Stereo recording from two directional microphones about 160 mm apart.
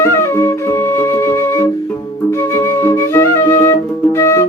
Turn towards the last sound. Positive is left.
turn(degrees=20)  # may be behind; listen again after turning